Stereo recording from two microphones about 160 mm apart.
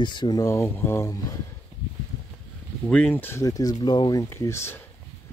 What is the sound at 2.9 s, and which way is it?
Speech, 10° left (ahead or behind).